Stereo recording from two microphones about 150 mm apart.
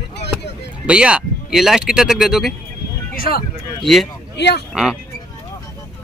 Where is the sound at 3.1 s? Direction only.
80° left.